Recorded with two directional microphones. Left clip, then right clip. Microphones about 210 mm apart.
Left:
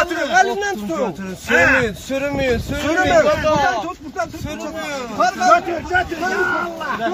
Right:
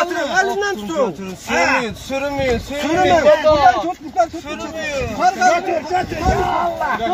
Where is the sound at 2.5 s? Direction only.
20° left (ahead or behind).